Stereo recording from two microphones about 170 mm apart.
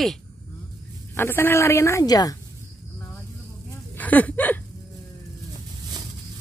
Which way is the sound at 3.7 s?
10° left (ahead or behind).